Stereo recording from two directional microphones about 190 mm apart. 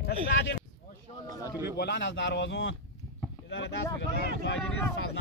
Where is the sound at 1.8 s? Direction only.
70° left (ahead or behind).